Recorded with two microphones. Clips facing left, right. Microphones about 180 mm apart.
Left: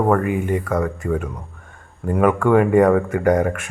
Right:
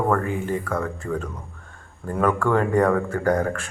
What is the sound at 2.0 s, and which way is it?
Speech, 15° left (ahead or behind).